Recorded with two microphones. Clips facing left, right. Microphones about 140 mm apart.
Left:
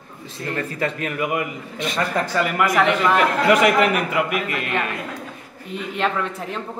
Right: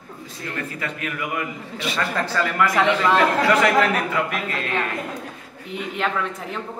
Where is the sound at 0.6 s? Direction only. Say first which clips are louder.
Left 5 dB; 40° left (ahead or behind); by 4.9 s 15° left (ahead or behind).